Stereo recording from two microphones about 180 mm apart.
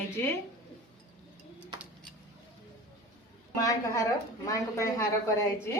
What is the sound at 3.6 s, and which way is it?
Speech, 20° left (ahead or behind).